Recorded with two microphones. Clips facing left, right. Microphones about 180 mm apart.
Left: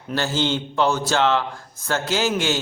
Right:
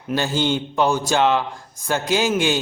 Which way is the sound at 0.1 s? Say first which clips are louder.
Right 2 dB; 15° right (ahead or behind).